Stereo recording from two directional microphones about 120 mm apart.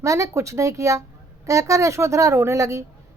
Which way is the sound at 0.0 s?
25° right (ahead or behind).